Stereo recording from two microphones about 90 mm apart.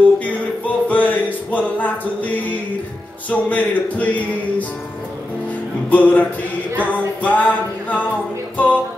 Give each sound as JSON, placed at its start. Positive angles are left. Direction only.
{"t": 0.2, "sound": "music", "side_deg": 15}
{"t": 5.9, "sound": "music", "side_deg": 15}